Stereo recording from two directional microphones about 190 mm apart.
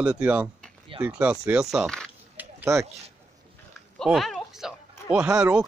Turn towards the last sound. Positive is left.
turn(degrees=-5)  # may be behind; listen again after turning